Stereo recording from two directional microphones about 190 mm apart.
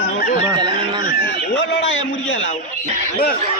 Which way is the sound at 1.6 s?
75° left (ahead or behind).